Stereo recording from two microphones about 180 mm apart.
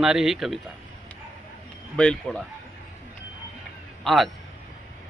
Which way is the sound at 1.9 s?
5° left (ahead or behind).